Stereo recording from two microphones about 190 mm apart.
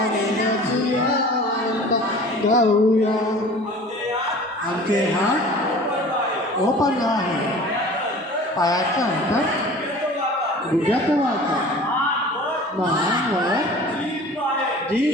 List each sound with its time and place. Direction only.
2.5 s speech: 35° left (ahead or behind)
6.7 s a woman's voice: 20° left (ahead or behind)
8.5 s a woman's voice: 20° left (ahead or behind)